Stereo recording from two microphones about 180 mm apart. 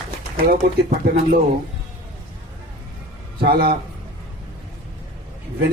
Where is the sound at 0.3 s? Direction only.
50° right (ahead or behind).